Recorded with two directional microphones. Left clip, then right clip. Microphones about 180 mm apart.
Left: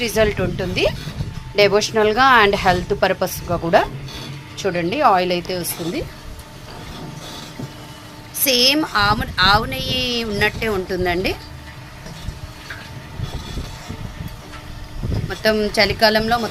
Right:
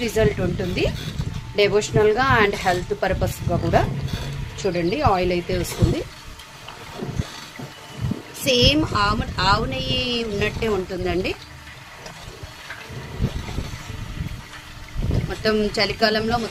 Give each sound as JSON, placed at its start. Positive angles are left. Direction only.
{"t": 0.0, "sound": "a woman's voice", "side_deg": 15}
{"t": 4.6, "sound": "speech", "side_deg": 5}
{"t": 8.4, "sound": "speech", "side_deg": 0}
{"t": 15.3, "sound": "speech", "side_deg": 0}